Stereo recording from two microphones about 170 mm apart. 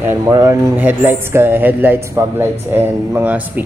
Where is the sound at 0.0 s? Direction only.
15° right (ahead or behind).